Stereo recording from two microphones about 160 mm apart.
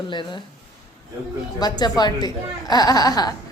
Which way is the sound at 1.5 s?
25° left (ahead or behind).